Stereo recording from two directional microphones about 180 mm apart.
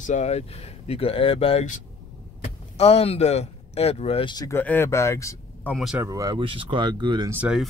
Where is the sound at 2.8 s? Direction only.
35° left (ahead or behind); by 5.7 s 15° left (ahead or behind).